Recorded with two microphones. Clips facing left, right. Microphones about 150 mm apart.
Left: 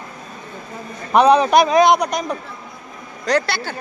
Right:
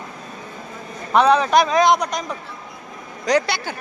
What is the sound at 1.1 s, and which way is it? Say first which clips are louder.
A man's voice: left 3 dB; 15° left (ahead or behind).